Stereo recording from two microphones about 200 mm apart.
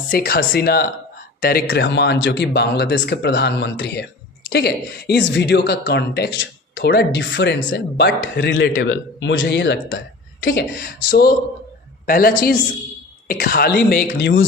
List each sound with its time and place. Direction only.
0.1 s a man's voice: 45° left (ahead or behind); by 14.4 s 65° left (ahead or behind)